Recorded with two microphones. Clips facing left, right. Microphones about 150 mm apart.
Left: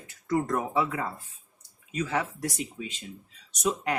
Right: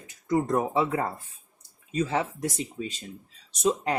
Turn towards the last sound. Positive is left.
turn(degrees=-30)  # may be behind; listen again after turning